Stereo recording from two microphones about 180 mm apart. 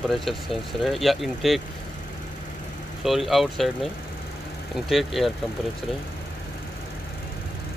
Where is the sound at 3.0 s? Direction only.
Centre (ahead or behind).